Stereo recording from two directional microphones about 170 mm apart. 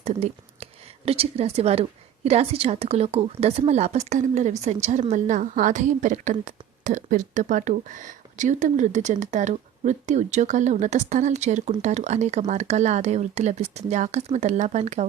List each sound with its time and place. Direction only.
0.0 s a woman's voice: 35° right (ahead or behind)